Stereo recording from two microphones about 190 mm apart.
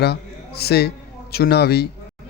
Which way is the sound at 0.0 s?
55° left (ahead or behind).